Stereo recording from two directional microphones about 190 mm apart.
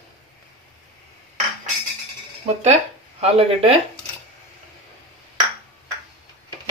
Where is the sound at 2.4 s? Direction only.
35° right (ahead or behind).